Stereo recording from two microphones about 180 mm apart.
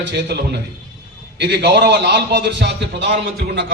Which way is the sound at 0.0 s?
70° right (ahead or behind).